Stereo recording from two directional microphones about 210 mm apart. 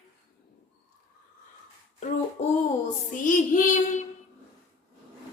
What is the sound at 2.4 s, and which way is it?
Child singing, 30° left (ahead or behind).